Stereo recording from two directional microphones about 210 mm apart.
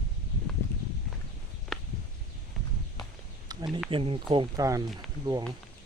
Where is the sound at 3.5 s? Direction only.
20° right (ahead or behind).